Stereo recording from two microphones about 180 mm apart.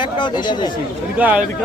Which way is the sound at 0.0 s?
25° left (ahead or behind).